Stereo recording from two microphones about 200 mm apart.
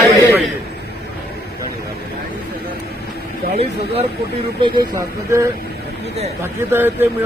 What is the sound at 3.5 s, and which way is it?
Speech, 30° right (ahead or behind).